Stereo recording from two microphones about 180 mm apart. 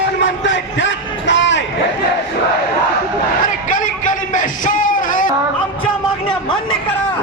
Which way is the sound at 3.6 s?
45° left (ahead or behind).